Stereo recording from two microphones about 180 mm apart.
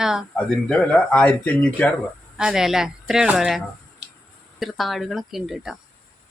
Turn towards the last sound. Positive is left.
turn(degrees=0)  # may be behind; listen again after turning